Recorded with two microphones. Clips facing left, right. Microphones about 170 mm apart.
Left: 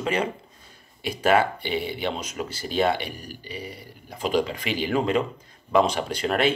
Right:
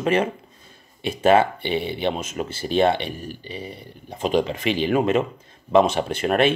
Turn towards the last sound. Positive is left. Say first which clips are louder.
# right 4 dB
turn(degrees=-25)  # may be behind; listen again after turning